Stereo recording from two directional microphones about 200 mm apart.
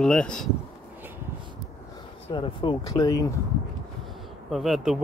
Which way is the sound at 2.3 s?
25° left (ahead or behind).